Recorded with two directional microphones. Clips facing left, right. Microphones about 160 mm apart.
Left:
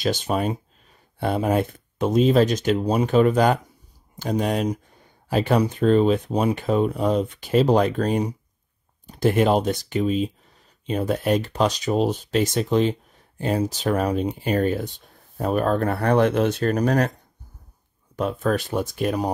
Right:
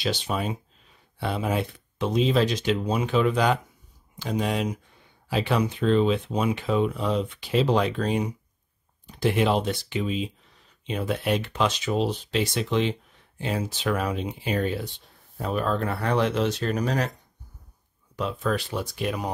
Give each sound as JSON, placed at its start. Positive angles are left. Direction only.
{"t": 0.0, "sound": "speech", "side_deg": 45}
{"t": 18.1, "sound": "speech", "side_deg": 50}